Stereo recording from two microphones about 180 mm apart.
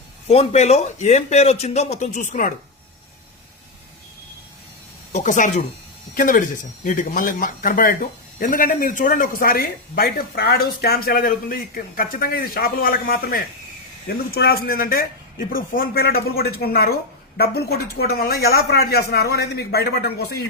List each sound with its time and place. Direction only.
0.3 s a man's voice: 35° left (ahead or behind)
5.1 s a man's voice: 45° left (ahead or behind); by 20.4 s 60° left (ahead or behind)